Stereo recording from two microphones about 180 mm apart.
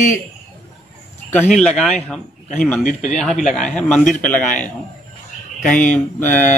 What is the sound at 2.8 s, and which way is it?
Speech, 40° left (ahead or behind).